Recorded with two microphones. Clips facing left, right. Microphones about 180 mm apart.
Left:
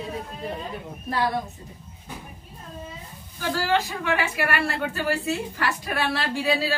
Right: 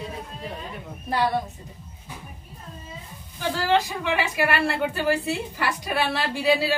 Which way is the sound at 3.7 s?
20° right (ahead or behind).